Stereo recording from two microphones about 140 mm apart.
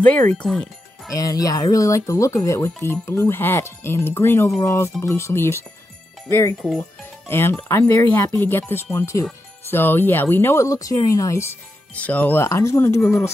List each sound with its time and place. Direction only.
0.0 s speech: 10° left (ahead or behind)
1.1 s speech: 25° left (ahead or behind)
7.2 s speech: 15° left (ahead or behind)